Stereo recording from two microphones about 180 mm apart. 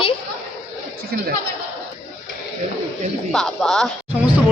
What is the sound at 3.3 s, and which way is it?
Speech, centre (ahead or behind).